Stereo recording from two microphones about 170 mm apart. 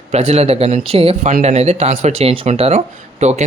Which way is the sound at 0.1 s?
40° right (ahead or behind).